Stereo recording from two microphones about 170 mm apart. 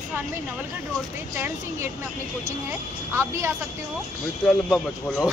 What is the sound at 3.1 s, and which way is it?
Speech, 15° right (ahead or behind).